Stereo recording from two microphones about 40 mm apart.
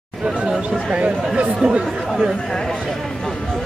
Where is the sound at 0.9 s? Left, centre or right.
Right.